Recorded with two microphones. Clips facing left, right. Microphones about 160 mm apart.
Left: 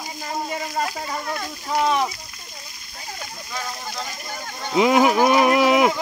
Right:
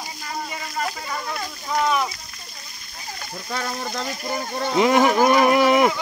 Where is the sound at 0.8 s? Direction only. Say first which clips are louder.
Left 1 dB; 10° left (ahead or behind).